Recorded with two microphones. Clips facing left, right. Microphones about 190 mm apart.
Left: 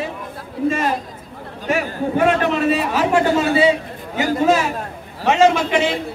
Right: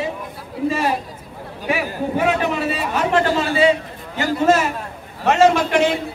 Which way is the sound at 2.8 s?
5° left (ahead or behind).